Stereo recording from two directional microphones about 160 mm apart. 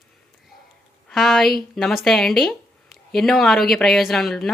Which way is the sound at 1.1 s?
Centre (ahead or behind).